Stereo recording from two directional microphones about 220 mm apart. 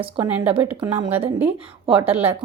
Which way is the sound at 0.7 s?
20° right (ahead or behind).